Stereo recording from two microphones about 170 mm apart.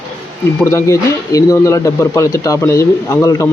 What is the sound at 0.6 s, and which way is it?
Speech, 20° left (ahead or behind).